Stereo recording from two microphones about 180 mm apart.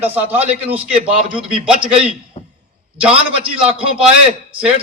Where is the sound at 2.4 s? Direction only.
30° left (ahead or behind).